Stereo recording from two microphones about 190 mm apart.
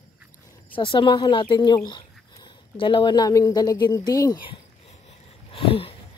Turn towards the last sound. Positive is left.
turn(degrees=30)  # may be behind; listen again after turning